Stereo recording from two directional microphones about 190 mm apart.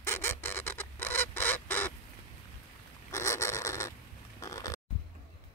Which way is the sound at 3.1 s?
15° left (ahead or behind).